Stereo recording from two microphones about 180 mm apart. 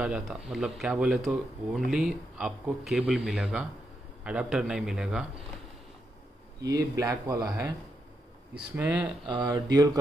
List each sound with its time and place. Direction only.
0.0 s speech: 5° right (ahead or behind)
6.6 s speech: 20° right (ahead or behind)
8.7 s speech: 10° right (ahead or behind)
9.2 s speech: 25° right (ahead or behind)